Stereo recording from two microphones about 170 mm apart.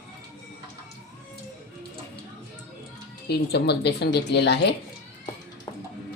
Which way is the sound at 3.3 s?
75° left (ahead or behind).